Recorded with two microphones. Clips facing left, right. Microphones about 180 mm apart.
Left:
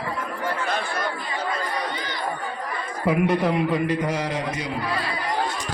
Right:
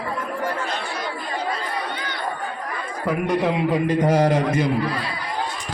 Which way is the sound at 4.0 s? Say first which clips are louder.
Right 8 dB; 40° right (ahead or behind).